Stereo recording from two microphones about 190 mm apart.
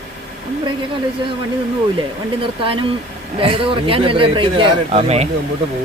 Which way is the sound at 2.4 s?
30° right (ahead or behind).